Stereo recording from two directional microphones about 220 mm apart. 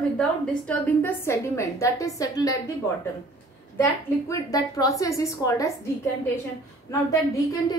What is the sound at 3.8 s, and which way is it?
A woman's voice, 15° left (ahead or behind).